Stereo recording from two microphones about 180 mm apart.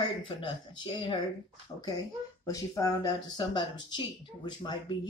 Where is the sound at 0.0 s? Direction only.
25° left (ahead or behind).